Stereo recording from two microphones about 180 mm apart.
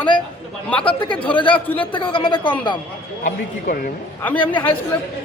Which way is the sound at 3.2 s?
50° left (ahead or behind).